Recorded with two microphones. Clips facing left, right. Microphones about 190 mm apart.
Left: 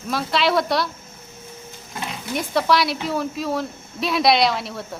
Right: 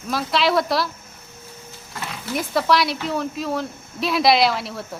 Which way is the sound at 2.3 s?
Centre (ahead or behind).